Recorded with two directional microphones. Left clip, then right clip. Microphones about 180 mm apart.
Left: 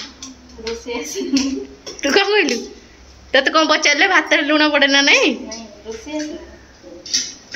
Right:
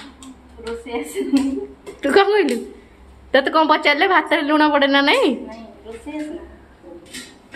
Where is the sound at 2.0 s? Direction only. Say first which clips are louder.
Even; 20° right (ahead or behind).